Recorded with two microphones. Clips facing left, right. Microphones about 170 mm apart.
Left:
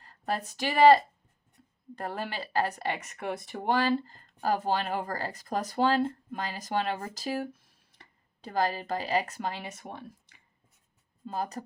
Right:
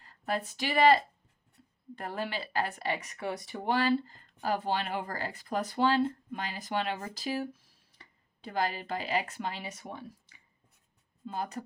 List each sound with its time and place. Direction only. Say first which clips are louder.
0.0 s speech: left 1 dB; 40° left (ahead or behind)
2.0 s speech: left 1 dB; 45° left (ahead or behind)
8.4 s speech: left 3 dB; 40° left (ahead or behind)
11.3 s speech: left 2 dB; 35° left (ahead or behind)